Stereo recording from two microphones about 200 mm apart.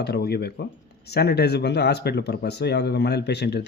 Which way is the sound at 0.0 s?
55° left (ahead or behind).